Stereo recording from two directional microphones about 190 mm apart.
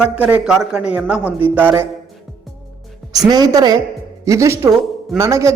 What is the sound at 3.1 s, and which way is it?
A man's voice, 20° right (ahead or behind).